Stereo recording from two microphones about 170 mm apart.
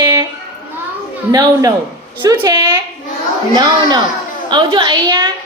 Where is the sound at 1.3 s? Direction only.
20° right (ahead or behind).